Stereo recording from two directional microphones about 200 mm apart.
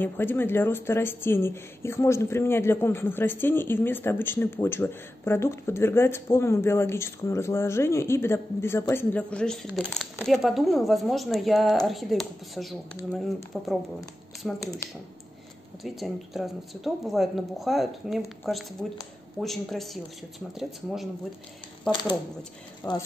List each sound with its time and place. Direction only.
0.0 s speech: 10° left (ahead or behind)
14.8 s speech: 15° left (ahead or behind)
15.8 s speech: centre (ahead or behind)
22.8 s speech: 10° left (ahead or behind)